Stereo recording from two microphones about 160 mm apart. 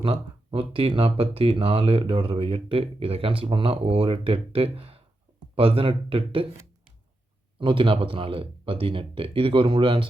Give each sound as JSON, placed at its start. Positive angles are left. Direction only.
{"t": 0.0, "sound": "speech", "side_deg": -35}
{"t": 7.6, "sound": "speech", "side_deg": -35}